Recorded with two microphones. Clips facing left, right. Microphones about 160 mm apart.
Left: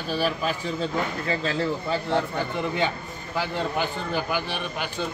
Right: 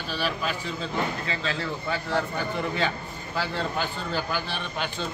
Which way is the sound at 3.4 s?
15° left (ahead or behind).